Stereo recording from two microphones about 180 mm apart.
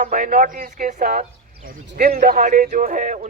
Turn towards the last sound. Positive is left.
turn(degrees=-45)  # may be behind; listen again after turning